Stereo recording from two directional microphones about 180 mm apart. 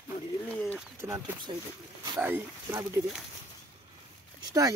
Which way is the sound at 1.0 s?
15° right (ahead or behind).